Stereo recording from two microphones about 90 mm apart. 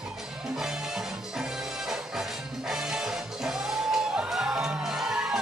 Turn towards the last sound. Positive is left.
turn(degrees=-5)  # may be behind; listen again after turning